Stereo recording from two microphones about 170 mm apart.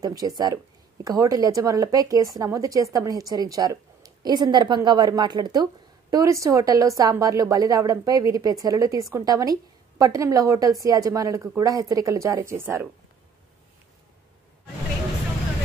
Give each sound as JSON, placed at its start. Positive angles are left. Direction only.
{"t": 0.0, "sound": "speech", "side_deg": -25}